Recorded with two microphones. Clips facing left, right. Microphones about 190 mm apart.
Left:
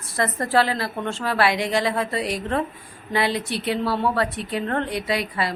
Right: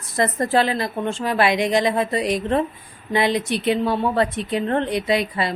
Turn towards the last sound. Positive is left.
turn(degrees=-20)  # may be behind; listen again after turning